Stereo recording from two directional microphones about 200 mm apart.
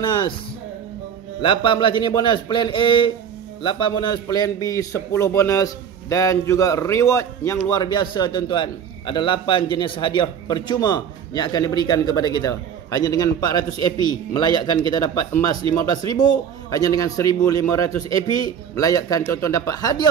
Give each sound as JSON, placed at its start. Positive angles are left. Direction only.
{"t": 1.4, "sound": "a man's voice", "side_deg": 25}